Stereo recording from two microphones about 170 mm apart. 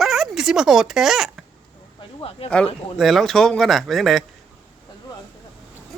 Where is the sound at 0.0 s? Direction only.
Centre (ahead or behind).